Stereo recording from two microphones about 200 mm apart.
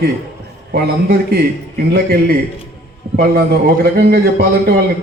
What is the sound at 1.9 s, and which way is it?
A man's voice, 50° right (ahead or behind).